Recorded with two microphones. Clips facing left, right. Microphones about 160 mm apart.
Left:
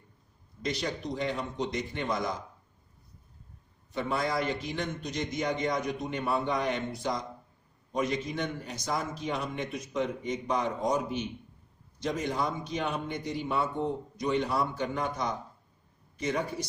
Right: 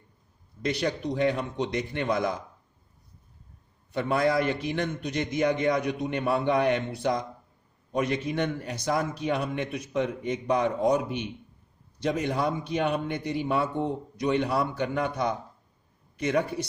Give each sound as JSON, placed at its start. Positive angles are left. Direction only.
{"t": 0.6, "sound": "a man's voice", "side_deg": -60}
{"t": 3.9, "sound": "a man's voice", "side_deg": -60}